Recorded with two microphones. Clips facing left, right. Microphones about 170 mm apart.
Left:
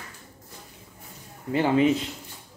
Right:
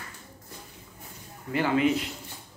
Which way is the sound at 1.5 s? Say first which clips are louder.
Left 3 dB; 30° left (ahead or behind).